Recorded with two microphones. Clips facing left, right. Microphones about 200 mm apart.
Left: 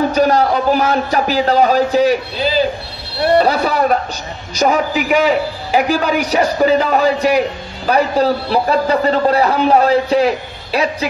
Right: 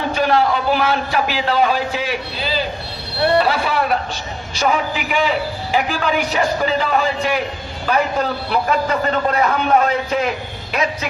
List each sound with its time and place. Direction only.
0.1 s a man's voice: 40° left (ahead or behind)
3.3 s a man's voice: 40° left (ahead or behind)